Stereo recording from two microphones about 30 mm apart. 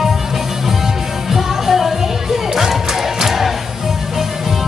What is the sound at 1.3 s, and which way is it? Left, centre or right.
Music, centre.